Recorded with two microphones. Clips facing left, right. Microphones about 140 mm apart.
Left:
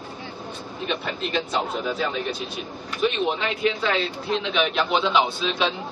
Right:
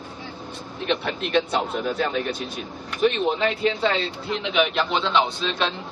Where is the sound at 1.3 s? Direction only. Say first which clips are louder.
Right 4 dB; 60° right (ahead or behind).